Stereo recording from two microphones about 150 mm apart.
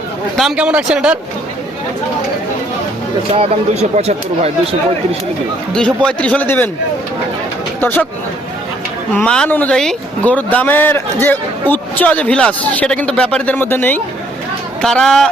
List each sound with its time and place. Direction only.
0.3 s a man's voice: 5° right (ahead or behind)
3.3 s speech: 45° right (ahead or behind)
5.7 s speech: 5° left (ahead or behind)
7.8 s speech: 15° left (ahead or behind)
9.1 s speech: 5° left (ahead or behind)